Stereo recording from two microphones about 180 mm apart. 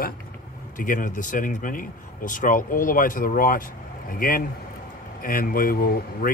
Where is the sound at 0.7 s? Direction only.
50° left (ahead or behind).